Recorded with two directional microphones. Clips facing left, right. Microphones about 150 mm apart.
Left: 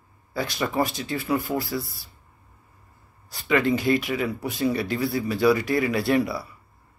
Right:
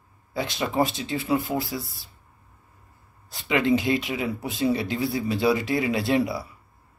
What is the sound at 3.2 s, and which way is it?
Speech, 20° right (ahead or behind).